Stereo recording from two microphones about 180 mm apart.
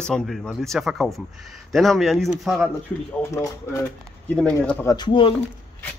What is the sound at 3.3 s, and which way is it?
Speech, 15° left (ahead or behind).